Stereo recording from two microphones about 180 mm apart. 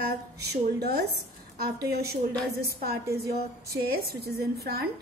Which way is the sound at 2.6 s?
60° right (ahead or behind).